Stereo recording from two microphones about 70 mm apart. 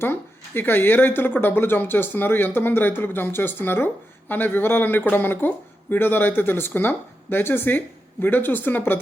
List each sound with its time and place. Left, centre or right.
0.0 s speech: left